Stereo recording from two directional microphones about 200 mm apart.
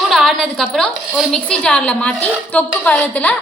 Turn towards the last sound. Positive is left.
turn(degrees=5)  # may be behind; listen again after turning